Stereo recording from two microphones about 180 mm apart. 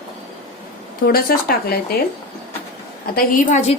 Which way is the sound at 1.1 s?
55° left (ahead or behind).